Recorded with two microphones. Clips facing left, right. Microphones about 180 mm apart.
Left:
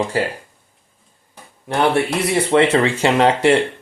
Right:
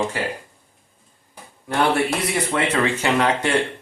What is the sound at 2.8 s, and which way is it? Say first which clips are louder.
Speech: left 4 dB; 25° left (ahead or behind).